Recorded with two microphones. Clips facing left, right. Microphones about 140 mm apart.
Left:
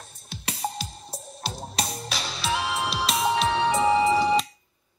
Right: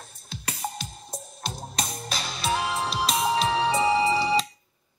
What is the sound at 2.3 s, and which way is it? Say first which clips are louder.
Music: right 1 dB; 45° right (ahead or behind).